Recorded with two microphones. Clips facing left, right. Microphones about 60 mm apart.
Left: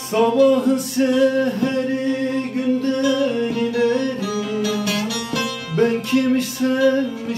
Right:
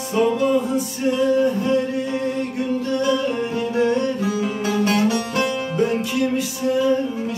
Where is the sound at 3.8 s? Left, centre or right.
Right.